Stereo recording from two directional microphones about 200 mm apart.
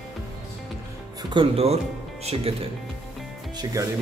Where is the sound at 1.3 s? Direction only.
25° right (ahead or behind).